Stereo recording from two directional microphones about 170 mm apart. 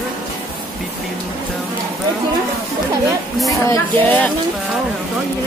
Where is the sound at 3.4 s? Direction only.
15° left (ahead or behind).